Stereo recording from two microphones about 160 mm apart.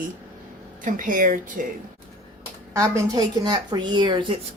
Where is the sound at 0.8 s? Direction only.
55° right (ahead or behind).